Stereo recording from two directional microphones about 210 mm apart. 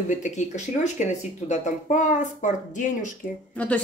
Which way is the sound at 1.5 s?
35° left (ahead or behind).